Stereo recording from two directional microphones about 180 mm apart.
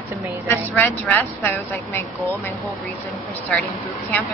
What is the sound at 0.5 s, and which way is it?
Speech, 10° left (ahead or behind).